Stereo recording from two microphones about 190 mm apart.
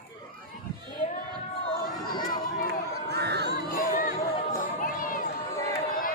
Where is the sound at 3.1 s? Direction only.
60° right (ahead or behind).